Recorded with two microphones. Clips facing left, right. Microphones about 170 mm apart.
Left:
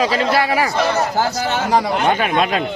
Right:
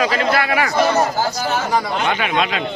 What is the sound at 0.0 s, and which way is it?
Speech, 30° left (ahead or behind).